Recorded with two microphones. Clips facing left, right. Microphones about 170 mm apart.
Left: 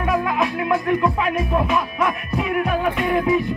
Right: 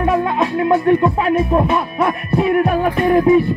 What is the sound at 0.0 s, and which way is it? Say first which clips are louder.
Music: right 4 dB; 30° right (ahead or behind).